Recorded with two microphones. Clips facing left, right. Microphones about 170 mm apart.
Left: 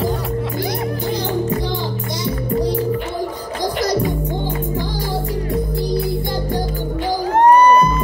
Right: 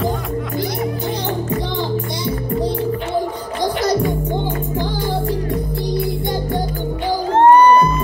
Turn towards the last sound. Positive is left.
turn(degrees=-25)  # may be behind; listen again after turning